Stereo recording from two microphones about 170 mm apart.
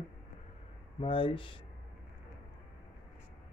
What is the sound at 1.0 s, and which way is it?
Speech, 30° left (ahead or behind).